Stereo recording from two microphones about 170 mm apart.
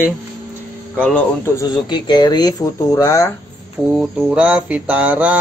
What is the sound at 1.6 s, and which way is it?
Speech, 25° left (ahead or behind).